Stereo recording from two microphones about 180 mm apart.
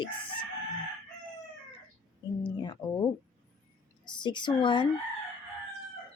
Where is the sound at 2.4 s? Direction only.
25° left (ahead or behind).